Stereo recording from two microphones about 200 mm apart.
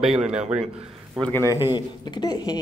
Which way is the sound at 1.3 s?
15° left (ahead or behind).